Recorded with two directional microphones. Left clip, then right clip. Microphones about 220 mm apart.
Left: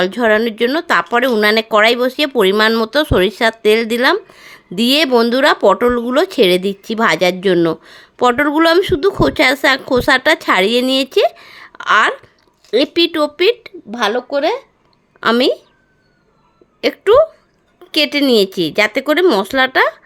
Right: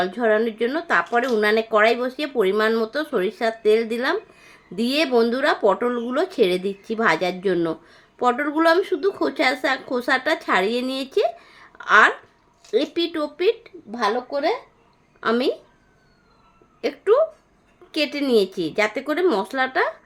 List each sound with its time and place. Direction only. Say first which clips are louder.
0.0 s speech: left 6 dB; 40° left (ahead or behind)
16.8 s speech: left 8 dB; 40° left (ahead or behind)